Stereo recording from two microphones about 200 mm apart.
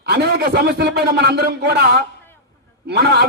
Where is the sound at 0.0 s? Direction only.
55° right (ahead or behind).